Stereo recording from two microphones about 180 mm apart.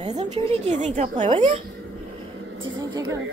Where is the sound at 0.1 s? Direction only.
40° right (ahead or behind).